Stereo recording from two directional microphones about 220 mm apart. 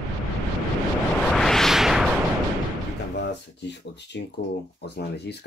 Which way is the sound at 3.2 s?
50° left (ahead or behind).